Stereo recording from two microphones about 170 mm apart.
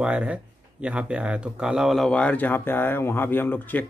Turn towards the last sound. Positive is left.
turn(degrees=10)  # may be behind; listen again after turning